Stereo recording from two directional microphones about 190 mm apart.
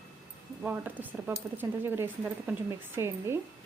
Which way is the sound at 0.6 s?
10° right (ahead or behind).